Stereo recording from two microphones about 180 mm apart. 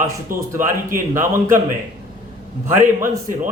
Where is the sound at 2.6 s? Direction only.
15° right (ahead or behind).